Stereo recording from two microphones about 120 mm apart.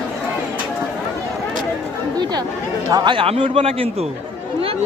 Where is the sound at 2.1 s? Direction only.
35° right (ahead or behind).